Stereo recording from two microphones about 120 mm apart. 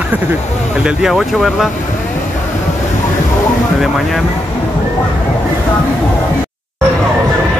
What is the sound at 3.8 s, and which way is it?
Speech, centre (ahead or behind).